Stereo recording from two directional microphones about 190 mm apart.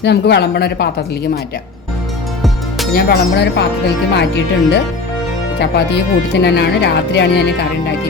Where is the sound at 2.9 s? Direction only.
60° left (ahead or behind).